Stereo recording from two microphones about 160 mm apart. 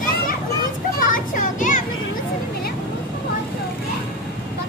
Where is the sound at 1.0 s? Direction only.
55° left (ahead or behind).